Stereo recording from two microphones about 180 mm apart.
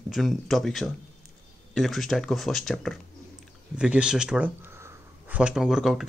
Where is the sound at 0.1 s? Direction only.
Centre (ahead or behind).